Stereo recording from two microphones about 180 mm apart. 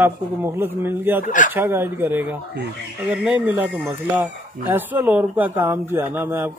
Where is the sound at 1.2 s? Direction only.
45° left (ahead or behind).